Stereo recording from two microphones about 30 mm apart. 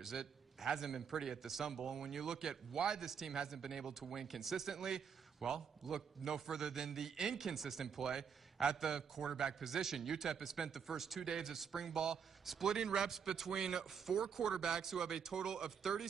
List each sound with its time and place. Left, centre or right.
0.0 s a man's voice: centre
11.2 s a man's voice: right
11.5 s a man's voice: centre
14.1 s a man's voice: centre
14.4 s a man's voice: right